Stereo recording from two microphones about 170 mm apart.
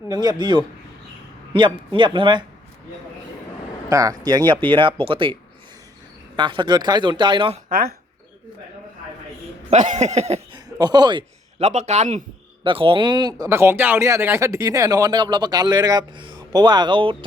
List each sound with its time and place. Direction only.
0.1 s speech: 25° right (ahead or behind)
3.8 s speech: 20° right (ahead or behind)
7.7 s speech: 60° right (ahead or behind)
9.6 s a sound: 45° right (ahead or behind)
10.8 s speech: 25° right (ahead or behind)
11.6 s speech: 45° right (ahead or behind)
12.6 s speech: 30° right (ahead or behind)